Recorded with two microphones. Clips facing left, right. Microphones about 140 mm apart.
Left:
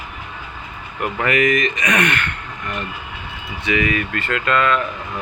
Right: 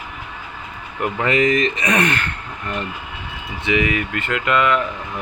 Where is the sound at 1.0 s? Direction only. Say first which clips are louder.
Right 1 dB; 25° right (ahead or behind).